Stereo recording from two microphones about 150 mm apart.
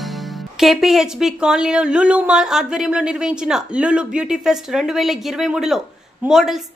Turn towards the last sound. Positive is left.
turn(degrees=0)  # may be behind; listen again after turning